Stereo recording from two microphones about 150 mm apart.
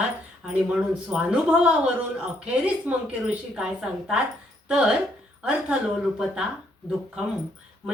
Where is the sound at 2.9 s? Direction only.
10° right (ahead or behind).